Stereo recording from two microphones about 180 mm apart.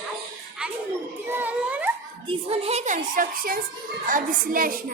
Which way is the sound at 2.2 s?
30° right (ahead or behind).